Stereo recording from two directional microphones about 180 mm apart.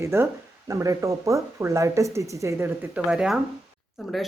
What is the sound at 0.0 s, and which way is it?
Speech, 15° right (ahead or behind).